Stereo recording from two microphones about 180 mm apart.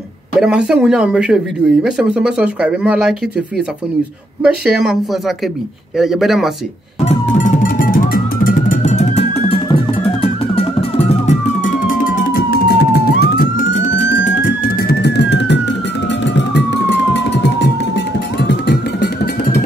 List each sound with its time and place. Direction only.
0.4 s speech: 5° right (ahead or behind)
5.9 s speech: centre (ahead or behind)
7.1 s police car: 45° left (ahead or behind); by 14.2 s 85° left
14.2 s music: 50° left (ahead or behind); by 15.6 s 75° left (ahead or behind)
16.3 s emergency vehicle: 75° left (ahead or behind)